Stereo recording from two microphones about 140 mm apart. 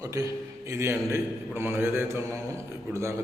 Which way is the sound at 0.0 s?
20° right (ahead or behind).